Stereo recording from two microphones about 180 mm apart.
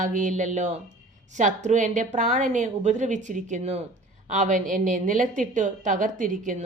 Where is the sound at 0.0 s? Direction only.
45° right (ahead or behind).